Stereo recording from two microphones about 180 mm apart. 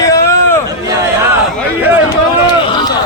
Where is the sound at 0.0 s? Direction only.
20° left (ahead or behind).